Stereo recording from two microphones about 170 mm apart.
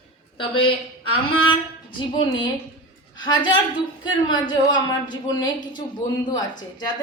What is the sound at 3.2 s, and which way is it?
A woman's voice, 25° left (ahead or behind).